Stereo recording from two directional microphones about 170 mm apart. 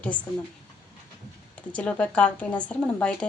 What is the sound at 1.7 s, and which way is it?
A woman's voice, 10° left (ahead or behind).